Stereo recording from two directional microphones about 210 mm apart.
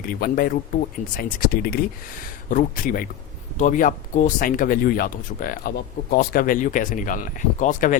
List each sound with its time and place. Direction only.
0.0 s speech: 45° left (ahead or behind)